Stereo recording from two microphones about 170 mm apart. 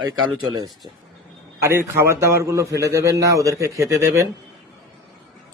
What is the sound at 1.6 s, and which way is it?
A man's voice, 15° right (ahead or behind).